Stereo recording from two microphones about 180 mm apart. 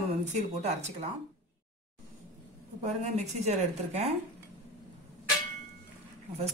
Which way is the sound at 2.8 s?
40° right (ahead or behind).